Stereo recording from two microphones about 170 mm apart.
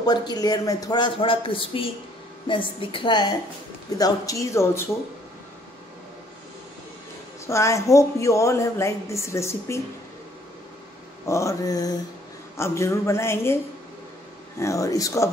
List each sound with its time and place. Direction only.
0.0 s a man's voice: 25° left (ahead or behind)
7.4 s a woman's voice: 15° left (ahead or behind)
11.2 s a man's voice: 15° left (ahead or behind)
14.6 s a man's voice: 20° left (ahead or behind)